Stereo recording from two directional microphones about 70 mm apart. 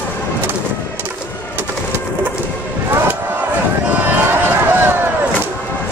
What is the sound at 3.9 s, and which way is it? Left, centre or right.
Run, right.